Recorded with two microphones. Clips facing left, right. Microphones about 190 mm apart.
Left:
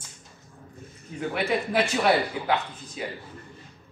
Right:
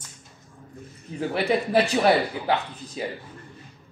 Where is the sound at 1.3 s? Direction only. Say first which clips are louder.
Right 4 dB; 35° right (ahead or behind).